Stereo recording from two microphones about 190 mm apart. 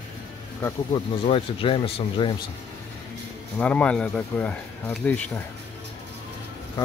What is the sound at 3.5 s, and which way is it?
Speech, 5° left (ahead or behind).